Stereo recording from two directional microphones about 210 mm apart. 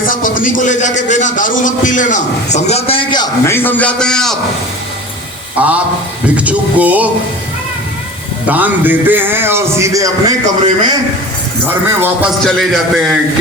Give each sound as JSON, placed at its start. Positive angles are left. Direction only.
{"t": 0.0, "sound": "a man's voice", "side_deg": 40}
{"t": 5.6, "sound": "a man's voice", "side_deg": -5}
{"t": 8.4, "sound": "a man's voice", "side_deg": -10}
{"t": 10.4, "sound": "a man's voice", "side_deg": -30}
{"t": 11.9, "sound": "a man's voice", "side_deg": -10}
{"t": 12.5, "sound": "a man's voice", "side_deg": 0}